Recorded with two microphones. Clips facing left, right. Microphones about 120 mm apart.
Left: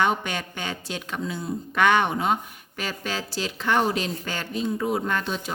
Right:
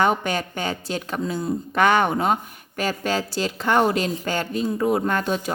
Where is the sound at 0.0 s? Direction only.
40° right (ahead or behind).